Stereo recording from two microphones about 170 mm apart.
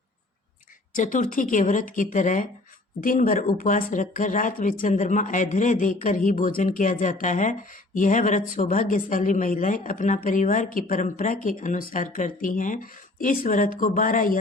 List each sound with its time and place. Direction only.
0.9 s speech: 50° left (ahead or behind)